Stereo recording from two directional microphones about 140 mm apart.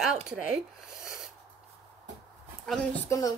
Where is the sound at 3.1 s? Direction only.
25° left (ahead or behind).